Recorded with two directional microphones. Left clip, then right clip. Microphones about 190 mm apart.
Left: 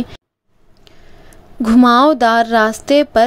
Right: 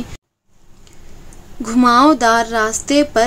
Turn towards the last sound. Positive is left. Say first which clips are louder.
# left 3 dB
turn(degrees=35)  # may be behind; listen again after turning